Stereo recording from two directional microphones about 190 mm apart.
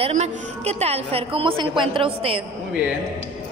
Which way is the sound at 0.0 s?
35° right (ahead or behind).